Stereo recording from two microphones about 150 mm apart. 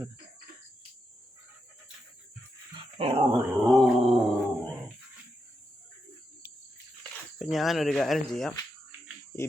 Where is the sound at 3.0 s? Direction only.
40° right (ahead or behind).